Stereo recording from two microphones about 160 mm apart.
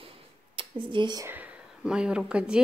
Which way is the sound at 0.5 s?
30° right (ahead or behind).